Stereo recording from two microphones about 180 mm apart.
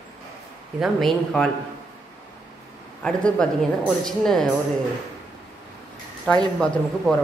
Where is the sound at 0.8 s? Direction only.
Centre (ahead or behind).